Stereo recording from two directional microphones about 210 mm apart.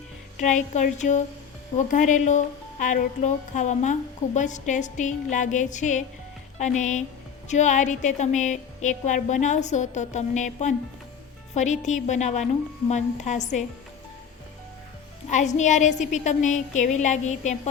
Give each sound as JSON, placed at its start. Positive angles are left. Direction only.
{"t": 0.3, "sound": "a woman's voice", "side_deg": 35}
{"t": 15.3, "sound": "a woman's voice", "side_deg": 35}